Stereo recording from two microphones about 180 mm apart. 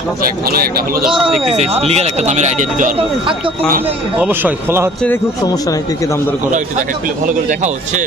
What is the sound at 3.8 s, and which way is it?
Speech, 10° right (ahead or behind).